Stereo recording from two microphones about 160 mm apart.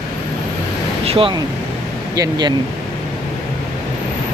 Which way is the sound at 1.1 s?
35° right (ahead or behind).